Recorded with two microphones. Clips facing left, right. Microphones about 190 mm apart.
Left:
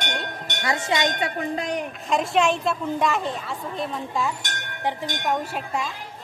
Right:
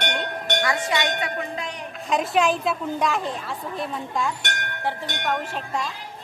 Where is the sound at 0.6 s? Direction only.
25° left (ahead or behind).